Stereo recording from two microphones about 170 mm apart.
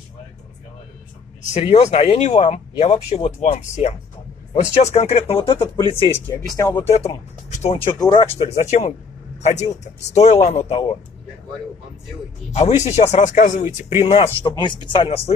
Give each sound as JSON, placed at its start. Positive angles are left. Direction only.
{"t": 1.5, "sound": "speech", "side_deg": 40}
{"t": 6.1, "sound": "speech", "side_deg": 15}
{"t": 6.9, "sound": "speech", "side_deg": 40}
{"t": 8.6, "sound": "a man's voice", "side_deg": 40}
{"t": 12.5, "sound": "speech", "side_deg": 40}
{"t": 14.0, "sound": "speech", "side_deg": 35}